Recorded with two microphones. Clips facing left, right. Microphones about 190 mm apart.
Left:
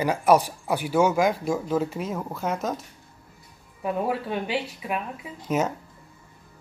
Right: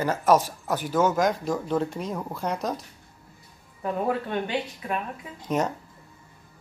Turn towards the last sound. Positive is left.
turn(degrees=5)  # may be behind; listen again after turning